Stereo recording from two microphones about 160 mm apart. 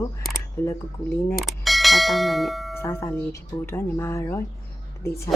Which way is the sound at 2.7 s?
15° left (ahead or behind).